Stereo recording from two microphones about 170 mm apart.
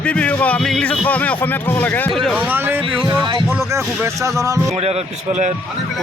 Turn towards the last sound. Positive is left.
turn(degrees=-20)  # may be behind; listen again after turning